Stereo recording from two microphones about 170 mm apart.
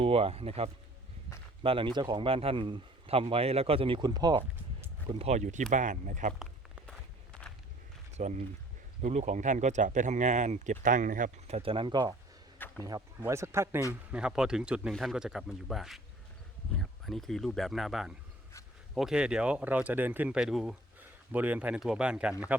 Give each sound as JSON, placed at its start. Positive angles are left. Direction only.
{"t": 0.0, "sound": "a man's voice", "side_deg": -35}
{"t": 5.0, "sound": "speech", "side_deg": -40}
{"t": 8.1, "sound": "speech", "side_deg": -45}
{"t": 12.5, "sound": "a sound", "side_deg": 10}
{"t": 12.8, "sound": "speech", "side_deg": -20}
{"t": 14.1, "sound": "speech", "side_deg": -5}